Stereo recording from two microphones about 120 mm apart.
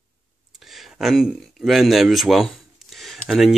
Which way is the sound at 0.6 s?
Centre (ahead or behind).